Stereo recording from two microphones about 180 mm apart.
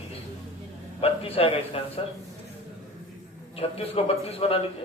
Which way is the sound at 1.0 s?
35° left (ahead or behind).